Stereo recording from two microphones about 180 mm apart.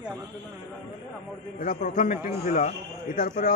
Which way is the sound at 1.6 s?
50° left (ahead or behind).